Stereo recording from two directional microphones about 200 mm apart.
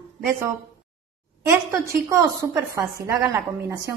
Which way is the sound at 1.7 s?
15° right (ahead or behind).